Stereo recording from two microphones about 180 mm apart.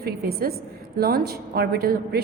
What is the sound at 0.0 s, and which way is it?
A woman's voice, 60° right (ahead or behind).